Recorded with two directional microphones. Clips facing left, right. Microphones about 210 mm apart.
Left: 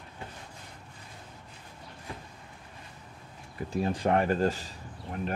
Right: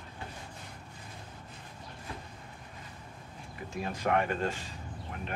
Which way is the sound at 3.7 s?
35° left (ahead or behind).